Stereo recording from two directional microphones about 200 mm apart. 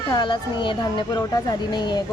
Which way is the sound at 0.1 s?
20° left (ahead or behind).